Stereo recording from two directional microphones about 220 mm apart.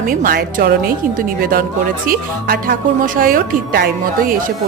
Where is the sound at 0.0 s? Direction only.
40° right (ahead or behind).